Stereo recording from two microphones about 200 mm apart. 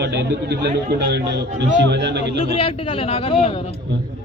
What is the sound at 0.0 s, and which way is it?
A man's voice, 60° right (ahead or behind).